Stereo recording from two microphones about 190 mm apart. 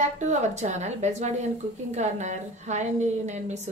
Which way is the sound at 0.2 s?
40° right (ahead or behind).